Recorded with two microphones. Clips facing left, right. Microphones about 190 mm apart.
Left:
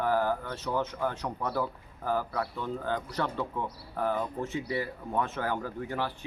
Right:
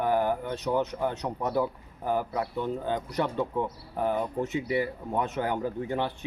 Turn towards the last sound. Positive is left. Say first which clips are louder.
# right 4 dB
turn(degrees=-20)  # may be behind; listen again after turning